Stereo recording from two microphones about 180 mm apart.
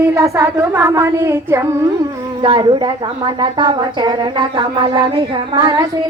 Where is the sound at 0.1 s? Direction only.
15° right (ahead or behind).